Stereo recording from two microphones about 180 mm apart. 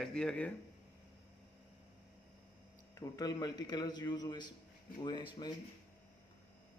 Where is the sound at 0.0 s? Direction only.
5° left (ahead or behind).